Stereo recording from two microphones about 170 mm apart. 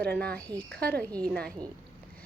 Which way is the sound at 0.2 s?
10° left (ahead or behind).